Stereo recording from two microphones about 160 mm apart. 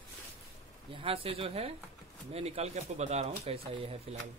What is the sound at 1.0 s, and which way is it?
Speech, 35° right (ahead or behind).